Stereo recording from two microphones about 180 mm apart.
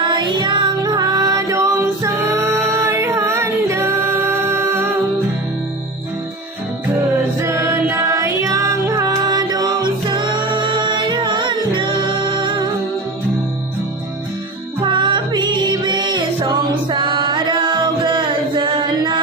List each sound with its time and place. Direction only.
0.0 s music: 25° right (ahead or behind)
7.4 s music: 15° right (ahead or behind)
14.8 s music: 25° right (ahead or behind)